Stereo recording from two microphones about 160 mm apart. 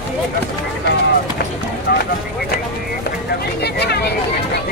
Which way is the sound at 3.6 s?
90° left.